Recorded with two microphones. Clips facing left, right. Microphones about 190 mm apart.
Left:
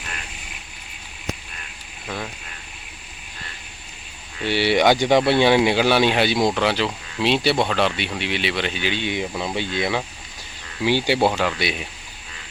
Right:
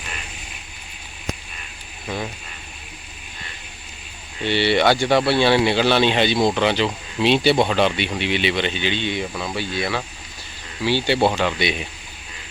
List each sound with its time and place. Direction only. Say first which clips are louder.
2.0 s speech: right 3 dB; 5° right (ahead or behind)
4.4 s speech: even; 10° left (ahead or behind)